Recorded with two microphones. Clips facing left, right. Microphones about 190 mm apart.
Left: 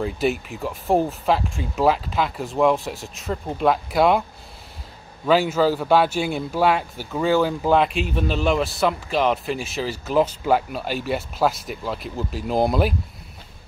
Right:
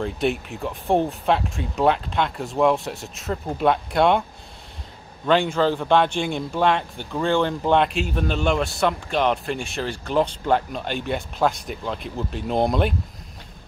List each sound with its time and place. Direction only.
0.0 s speech: centre (ahead or behind)
5.2 s speech: 5° left (ahead or behind)